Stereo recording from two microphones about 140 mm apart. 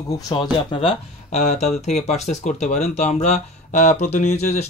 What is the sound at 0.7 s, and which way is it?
Speech, 50° left (ahead or behind).